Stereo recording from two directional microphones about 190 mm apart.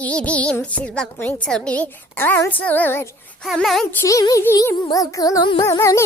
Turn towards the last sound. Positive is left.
turn(degrees=15)  # may be behind; listen again after turning